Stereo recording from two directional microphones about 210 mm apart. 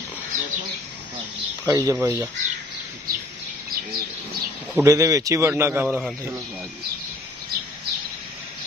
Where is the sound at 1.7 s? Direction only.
15° right (ahead or behind).